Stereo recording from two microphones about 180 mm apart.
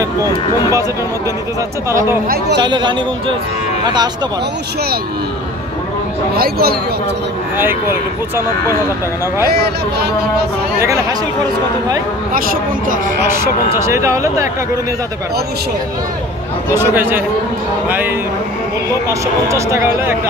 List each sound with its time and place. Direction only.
2.2 s speech: 55° right (ahead or behind)
2.6 s speech: 25° right (ahead or behind)
6.3 s speech: 55° right (ahead or behind)
10.8 s speech: 15° right (ahead or behind)
12.4 s a woman's voice: 50° right (ahead or behind)
13.4 s speech: 15° right (ahead or behind)
16.7 s speech: 10° right (ahead or behind)